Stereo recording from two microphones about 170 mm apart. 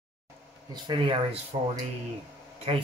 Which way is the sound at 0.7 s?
30° right (ahead or behind).